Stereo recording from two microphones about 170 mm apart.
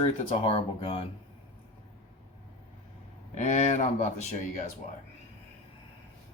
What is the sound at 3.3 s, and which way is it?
Speech, 45° left (ahead or behind).